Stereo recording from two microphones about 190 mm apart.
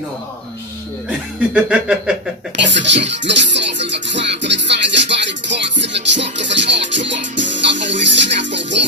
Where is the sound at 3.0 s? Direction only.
70° right (ahead or behind).